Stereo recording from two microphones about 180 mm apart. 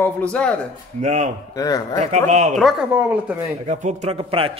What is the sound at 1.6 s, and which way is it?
Speech, 20° left (ahead or behind).